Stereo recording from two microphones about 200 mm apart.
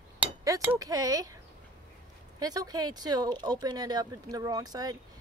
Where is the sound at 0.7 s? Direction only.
20° right (ahead or behind).